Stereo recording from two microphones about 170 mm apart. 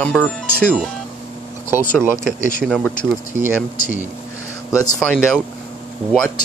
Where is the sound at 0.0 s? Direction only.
5° left (ahead or behind).